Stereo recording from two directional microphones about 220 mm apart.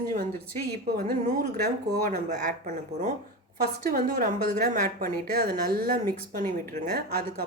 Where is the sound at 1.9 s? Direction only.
40° right (ahead or behind).